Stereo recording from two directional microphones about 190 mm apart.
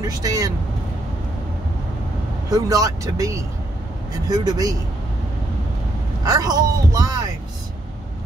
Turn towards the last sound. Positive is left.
turn(degrees=-20)  # may be behind; listen again after turning